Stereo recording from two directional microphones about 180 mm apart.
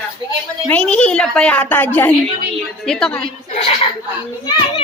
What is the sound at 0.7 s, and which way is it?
A woman's voice, 5° left (ahead or behind).